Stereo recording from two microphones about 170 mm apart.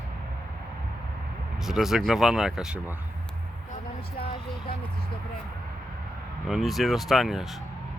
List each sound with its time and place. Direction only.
1.6 s speech: centre (ahead or behind)
6.5 s speech: centre (ahead or behind)